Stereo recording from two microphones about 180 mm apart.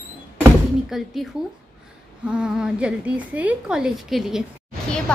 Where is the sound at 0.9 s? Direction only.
Centre (ahead or behind).